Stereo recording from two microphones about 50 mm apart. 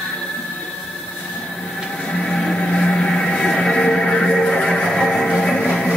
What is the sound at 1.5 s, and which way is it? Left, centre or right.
Train, centre.